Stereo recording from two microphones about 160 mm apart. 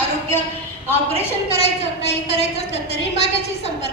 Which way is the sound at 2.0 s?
40° left (ahead or behind).